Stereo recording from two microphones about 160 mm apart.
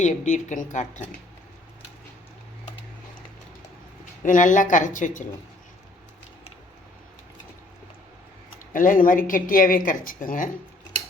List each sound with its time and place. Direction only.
0.0 s a woman's voice: 50° left (ahead or behind)
4.2 s a woman's voice: 55° left (ahead or behind)
8.7 s speech: 55° left (ahead or behind)